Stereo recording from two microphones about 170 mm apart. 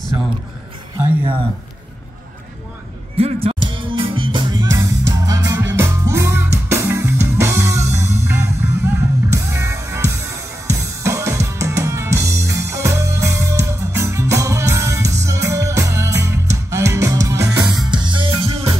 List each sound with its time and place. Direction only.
3.2 s speech: 35° right (ahead or behind)
3.6 s music: 30° right (ahead or behind)